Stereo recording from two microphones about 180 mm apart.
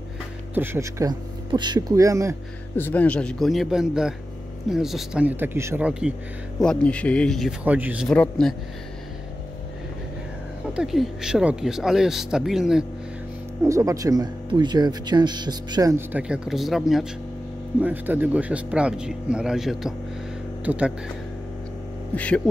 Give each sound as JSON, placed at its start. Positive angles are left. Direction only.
{"t": 0.6, "sound": "speech", "side_deg": -15}
{"t": 2.7, "sound": "speech", "side_deg": 10}
{"t": 6.6, "sound": "speech", "side_deg": 5}
{"t": 7.6, "sound": "speech", "side_deg": -10}
{"t": 8.1, "sound": "speech", "side_deg": 5}
{"t": 10.7, "sound": "speech", "side_deg": -5}
{"t": 13.7, "sound": "speech", "side_deg": -15}
{"t": 16.1, "sound": "speech", "side_deg": -5}
{"t": 22.1, "sound": "speech", "side_deg": 10}